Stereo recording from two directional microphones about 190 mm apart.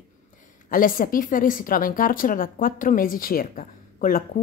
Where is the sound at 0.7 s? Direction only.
45° left (ahead or behind).